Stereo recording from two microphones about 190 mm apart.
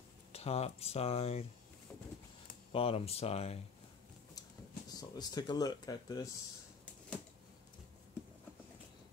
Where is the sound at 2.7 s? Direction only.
30° left (ahead or behind).